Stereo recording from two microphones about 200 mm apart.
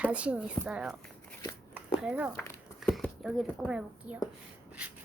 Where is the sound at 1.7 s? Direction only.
5° right (ahead or behind).